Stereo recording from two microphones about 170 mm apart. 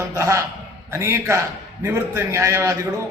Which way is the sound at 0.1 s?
15° right (ahead or behind).